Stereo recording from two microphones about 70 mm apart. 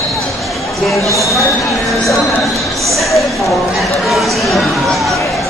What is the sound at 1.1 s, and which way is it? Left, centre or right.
Speech, left.